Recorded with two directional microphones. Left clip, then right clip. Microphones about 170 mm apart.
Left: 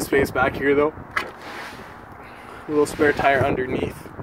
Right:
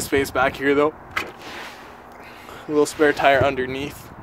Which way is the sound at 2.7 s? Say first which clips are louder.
Right 1 dB; 15° right (ahead or behind).